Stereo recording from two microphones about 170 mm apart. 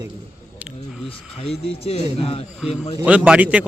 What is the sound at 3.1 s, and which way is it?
Speech, 5° right (ahead or behind).